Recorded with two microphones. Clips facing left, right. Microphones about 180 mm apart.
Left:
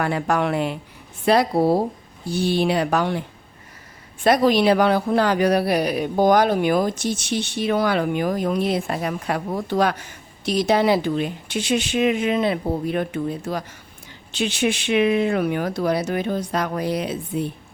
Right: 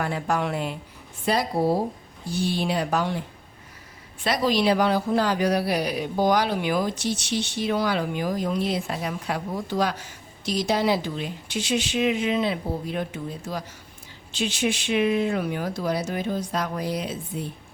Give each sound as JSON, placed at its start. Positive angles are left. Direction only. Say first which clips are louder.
{"t": 0.0, "sound": "speech", "louder": "left 4 dB", "side_deg": 65}
{"t": 4.2, "sound": "speech", "louder": "left 6 dB", "side_deg": 55}